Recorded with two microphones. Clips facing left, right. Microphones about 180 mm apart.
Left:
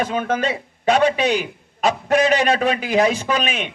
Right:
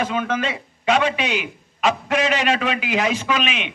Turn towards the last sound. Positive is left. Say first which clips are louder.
# left 1 dB
turn(degrees=45)  # may be behind; listen again after turning